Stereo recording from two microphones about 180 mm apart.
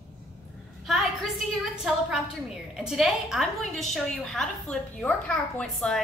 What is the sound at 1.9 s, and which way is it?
A woman's voice, centre (ahead or behind).